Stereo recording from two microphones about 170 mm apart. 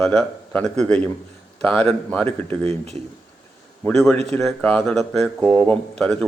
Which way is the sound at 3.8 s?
5° left (ahead or behind).